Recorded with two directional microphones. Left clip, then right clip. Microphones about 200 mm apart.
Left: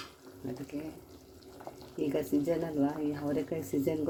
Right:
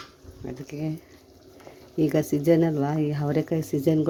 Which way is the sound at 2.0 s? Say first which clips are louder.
Right 7 dB; 40° right (ahead or behind).